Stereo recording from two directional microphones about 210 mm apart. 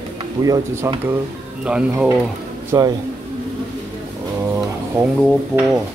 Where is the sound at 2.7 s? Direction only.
15° right (ahead or behind).